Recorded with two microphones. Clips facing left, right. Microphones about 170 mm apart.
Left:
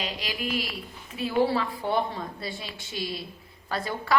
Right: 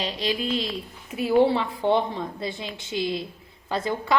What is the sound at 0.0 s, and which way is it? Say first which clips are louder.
A woman's voice: right 6 dB; 30° right (ahead or behind).